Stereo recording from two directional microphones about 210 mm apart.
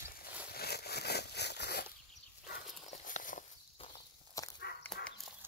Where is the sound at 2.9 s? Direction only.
35° left (ahead or behind).